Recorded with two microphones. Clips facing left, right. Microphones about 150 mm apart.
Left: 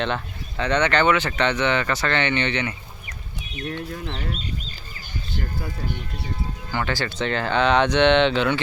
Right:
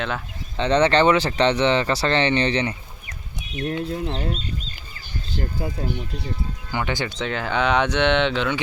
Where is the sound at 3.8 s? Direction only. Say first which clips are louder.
Right 5 dB; 25° right (ahead or behind).